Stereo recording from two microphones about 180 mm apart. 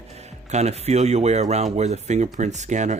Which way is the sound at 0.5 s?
35° right (ahead or behind).